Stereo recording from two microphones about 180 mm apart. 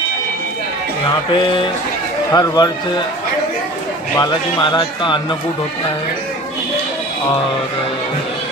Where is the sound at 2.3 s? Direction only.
20° left (ahead or behind).